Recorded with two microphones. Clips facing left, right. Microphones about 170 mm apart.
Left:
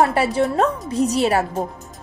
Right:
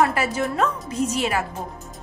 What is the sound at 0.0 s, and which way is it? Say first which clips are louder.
A woman's voice: left 4 dB; 30° left (ahead or behind).